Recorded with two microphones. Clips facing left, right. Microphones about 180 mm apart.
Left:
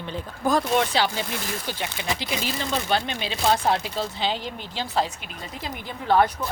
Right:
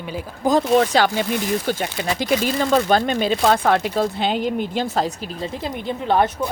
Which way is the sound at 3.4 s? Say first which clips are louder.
Right 2 dB; 65° right (ahead or behind).